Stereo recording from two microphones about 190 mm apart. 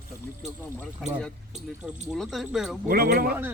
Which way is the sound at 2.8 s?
55° right (ahead or behind).